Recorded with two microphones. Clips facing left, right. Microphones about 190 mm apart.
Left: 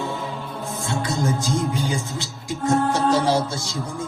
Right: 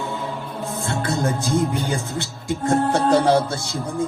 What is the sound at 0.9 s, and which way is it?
Speech, 60° right (ahead or behind).